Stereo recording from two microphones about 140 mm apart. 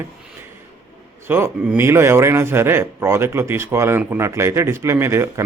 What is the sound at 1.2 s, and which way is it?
A man's voice, 15° right (ahead or behind).